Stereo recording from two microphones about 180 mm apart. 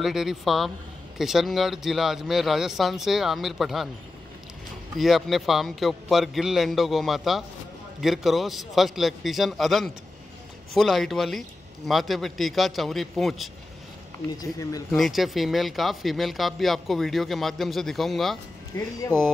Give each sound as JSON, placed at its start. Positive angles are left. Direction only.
{"t": 0.0, "sound": "speech", "side_deg": 0}
{"t": 4.9, "sound": "speech", "side_deg": 0}
{"t": 14.3, "sound": "speech", "side_deg": 20}
{"t": 14.9, "sound": "speech", "side_deg": 0}
{"t": 18.7, "sound": "speech", "side_deg": 20}